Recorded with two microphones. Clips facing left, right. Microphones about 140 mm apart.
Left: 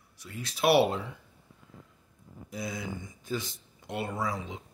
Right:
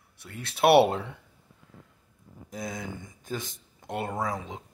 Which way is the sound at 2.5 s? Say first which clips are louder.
Even; 45° right (ahead or behind).